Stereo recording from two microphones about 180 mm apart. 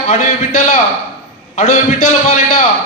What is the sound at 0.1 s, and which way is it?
Speech, 40° left (ahead or behind).